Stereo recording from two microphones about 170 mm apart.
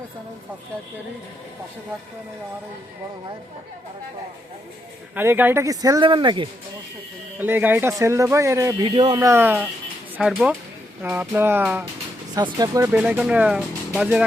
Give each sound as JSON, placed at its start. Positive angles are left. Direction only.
{"t": 5.1, "sound": "speech", "side_deg": -10}
{"t": 7.3, "sound": "speech", "side_deg": -10}
{"t": 8.8, "sound": "speech", "side_deg": -30}
{"t": 9.2, "sound": "speech", "side_deg": -15}
{"t": 12.5, "sound": "speech", "side_deg": -20}